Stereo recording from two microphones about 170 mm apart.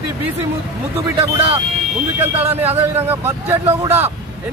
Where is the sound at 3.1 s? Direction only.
15° right (ahead or behind).